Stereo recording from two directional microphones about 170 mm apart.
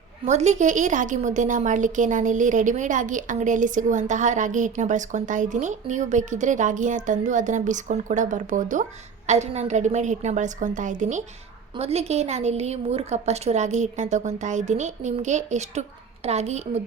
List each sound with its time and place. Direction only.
0.3 s a woman's voice: 45° right (ahead or behind)